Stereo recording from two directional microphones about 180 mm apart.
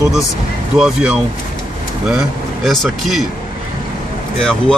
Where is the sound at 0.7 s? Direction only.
5° right (ahead or behind).